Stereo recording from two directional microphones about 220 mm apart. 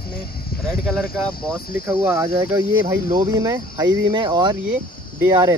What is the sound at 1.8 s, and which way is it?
Speech, 10° right (ahead or behind).